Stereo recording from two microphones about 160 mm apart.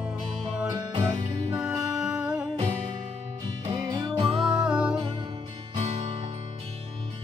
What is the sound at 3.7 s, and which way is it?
Music, 25° right (ahead or behind).